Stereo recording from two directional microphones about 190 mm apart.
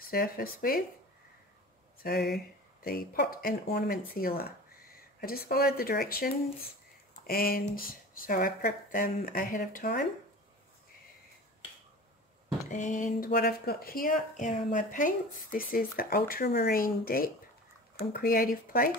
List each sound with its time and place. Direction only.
0.0 s speech: 50° left (ahead or behind)
2.3 s speech: 50° left (ahead or behind)
12.6 s speech: 40° left (ahead or behind)